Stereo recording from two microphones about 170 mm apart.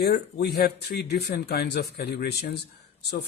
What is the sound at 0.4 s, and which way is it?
A man's voice, 70° left (ahead or behind).